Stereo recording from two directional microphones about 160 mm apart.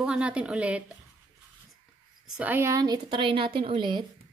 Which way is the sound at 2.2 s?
10° right (ahead or behind).